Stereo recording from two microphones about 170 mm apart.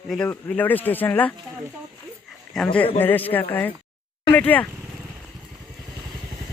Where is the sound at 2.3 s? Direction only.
5° left (ahead or behind).